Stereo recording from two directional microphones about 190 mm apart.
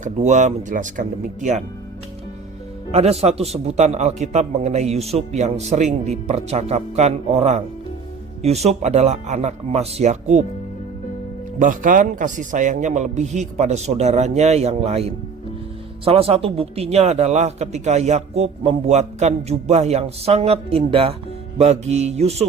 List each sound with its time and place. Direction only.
0.0 s speech: 40° right (ahead or behind)
2.9 s speech: 35° right (ahead or behind)
11.6 s speech: 45° right (ahead or behind)